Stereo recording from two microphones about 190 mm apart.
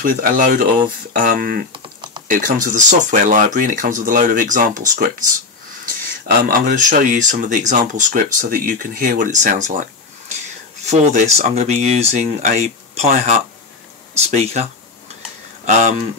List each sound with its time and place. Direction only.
0.0 s speech: 45° right (ahead or behind)
1.7 s typing: 25° right (ahead or behind)
2.2 s speech: 45° right (ahead or behind)
6.5 s speech: 45° right (ahead or behind)
15.6 s speech: 40° right (ahead or behind)